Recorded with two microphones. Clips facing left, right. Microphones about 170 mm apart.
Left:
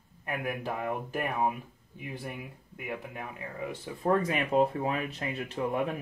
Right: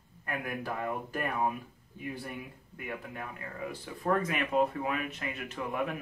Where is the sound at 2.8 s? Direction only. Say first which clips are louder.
Left 2 dB; 15° left (ahead or behind).